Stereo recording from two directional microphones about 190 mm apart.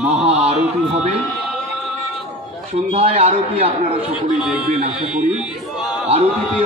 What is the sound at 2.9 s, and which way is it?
A man's voice, 30° right (ahead or behind).